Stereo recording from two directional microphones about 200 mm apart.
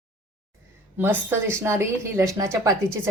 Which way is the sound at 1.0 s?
10° right (ahead or behind).